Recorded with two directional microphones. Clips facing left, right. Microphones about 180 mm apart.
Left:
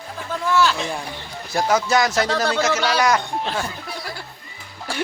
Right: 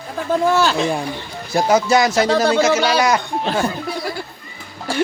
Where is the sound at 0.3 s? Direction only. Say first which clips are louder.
Right 4 dB; 40° right (ahead or behind).